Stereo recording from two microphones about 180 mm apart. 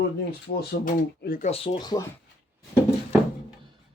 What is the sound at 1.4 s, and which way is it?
Speech, 35° left (ahead or behind).